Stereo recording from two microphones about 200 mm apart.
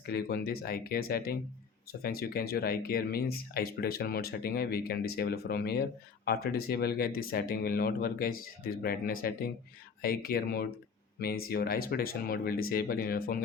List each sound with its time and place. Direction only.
0.0 s speech: 50° left (ahead or behind)